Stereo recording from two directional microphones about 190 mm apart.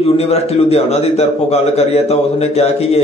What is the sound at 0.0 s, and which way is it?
A man's voice, 30° left (ahead or behind).